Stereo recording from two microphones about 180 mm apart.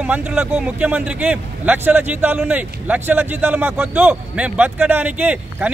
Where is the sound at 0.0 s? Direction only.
10° right (ahead or behind).